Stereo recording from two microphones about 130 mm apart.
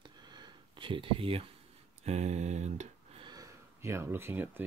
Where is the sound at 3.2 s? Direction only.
30° right (ahead or behind).